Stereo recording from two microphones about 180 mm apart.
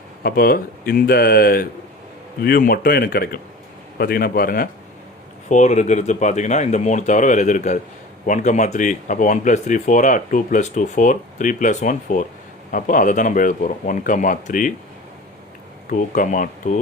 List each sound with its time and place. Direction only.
0.2 s speech: 55° left (ahead or behind)
5.5 s speech: 40° left (ahead or behind)
15.9 s speech: 45° left (ahead or behind)